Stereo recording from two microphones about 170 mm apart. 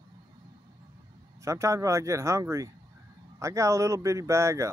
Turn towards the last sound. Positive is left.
turn(degrees=-15)  # may be behind; listen again after turning